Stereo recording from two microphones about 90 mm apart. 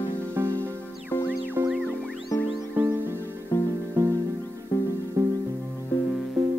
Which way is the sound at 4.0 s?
25° right (ahead or behind).